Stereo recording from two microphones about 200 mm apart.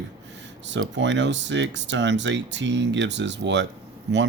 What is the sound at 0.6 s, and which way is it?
Speech, 65° right (ahead or behind).